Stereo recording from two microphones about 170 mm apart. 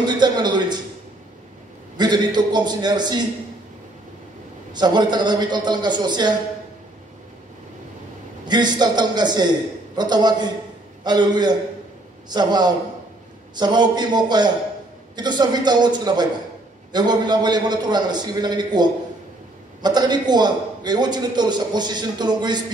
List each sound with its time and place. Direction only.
0.0 s a sound: 25° right (ahead or behind)
2.0 s a man's voice: 25° right (ahead or behind)
4.7 s a man's voice: 25° right (ahead or behind)
8.5 s a man's voice: 25° right (ahead or behind)